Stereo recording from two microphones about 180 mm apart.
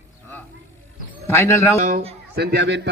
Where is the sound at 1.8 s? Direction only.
40° right (ahead or behind).